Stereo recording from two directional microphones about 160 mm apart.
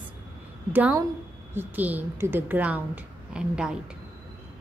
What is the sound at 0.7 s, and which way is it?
A woman's voice, 10° right (ahead or behind).